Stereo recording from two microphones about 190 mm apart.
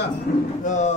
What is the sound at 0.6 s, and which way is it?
Speech, 40° left (ahead or behind).